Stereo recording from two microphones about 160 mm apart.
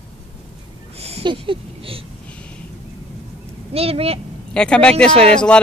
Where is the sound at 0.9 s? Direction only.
40° right (ahead or behind).